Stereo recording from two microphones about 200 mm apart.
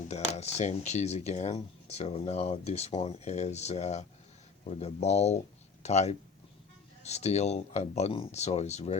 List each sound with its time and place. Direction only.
0.1 s speech: 35° left (ahead or behind)